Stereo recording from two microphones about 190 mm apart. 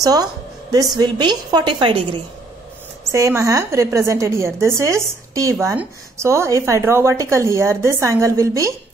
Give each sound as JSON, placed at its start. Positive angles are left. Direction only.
{"t": 0.0, "sound": "a woman's voice", "side_deg": -20}
{"t": 3.1, "sound": "a woman's voice", "side_deg": -15}